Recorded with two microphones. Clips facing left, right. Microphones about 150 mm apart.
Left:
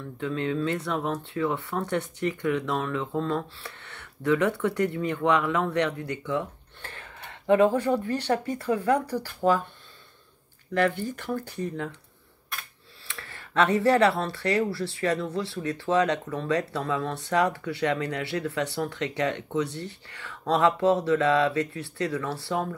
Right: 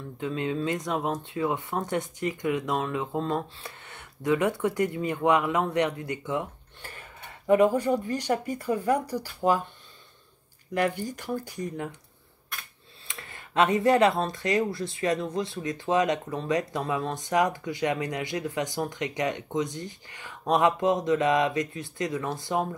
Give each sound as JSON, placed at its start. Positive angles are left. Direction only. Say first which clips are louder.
{"t": 0.2, "sound": "speech", "louder": "left 1 dB", "side_deg": -20}
{"t": 10.7, "sound": "speech", "louder": "left 2 dB", "side_deg": -15}
{"t": 13.1, "sound": "speech", "louder": "left 1 dB", "side_deg": -15}